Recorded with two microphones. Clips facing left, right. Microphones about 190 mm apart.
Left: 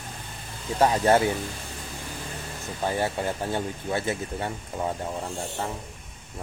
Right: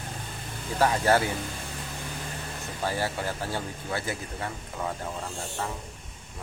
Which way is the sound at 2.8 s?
20° left (ahead or behind).